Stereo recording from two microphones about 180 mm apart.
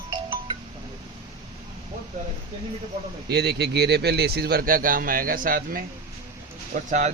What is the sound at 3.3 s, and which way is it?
Speech, 65° right (ahead or behind).